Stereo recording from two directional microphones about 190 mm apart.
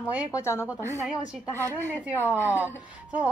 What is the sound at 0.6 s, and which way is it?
Speech, 10° right (ahead or behind).